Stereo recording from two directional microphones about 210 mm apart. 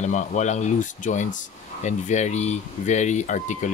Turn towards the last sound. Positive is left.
turn(degrees=35)  # may be behind; listen again after turning